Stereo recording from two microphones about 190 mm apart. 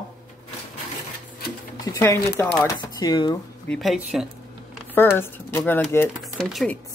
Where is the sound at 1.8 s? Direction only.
20° left (ahead or behind).